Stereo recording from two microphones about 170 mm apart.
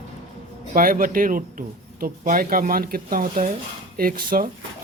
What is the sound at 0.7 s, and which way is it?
A woman's voice, 55° right (ahead or behind).